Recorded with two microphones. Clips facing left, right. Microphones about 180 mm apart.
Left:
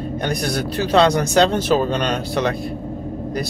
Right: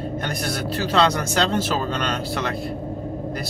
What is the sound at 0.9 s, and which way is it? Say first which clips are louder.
Speech: left 6 dB; 20° left (ahead or behind).